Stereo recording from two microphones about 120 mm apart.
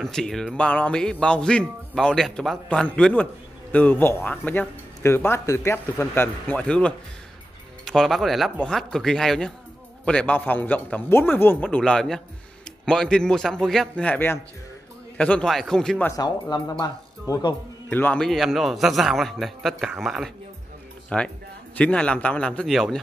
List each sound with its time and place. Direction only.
0.0 s a man's voice: 5° left (ahead or behind)
16.1 s speech: 35° left (ahead or behind)
17.8 s a man's voice: 15° left (ahead or behind)
18.2 s a man's voice: centre (ahead or behind)
21.1 s speech: 10° left (ahead or behind)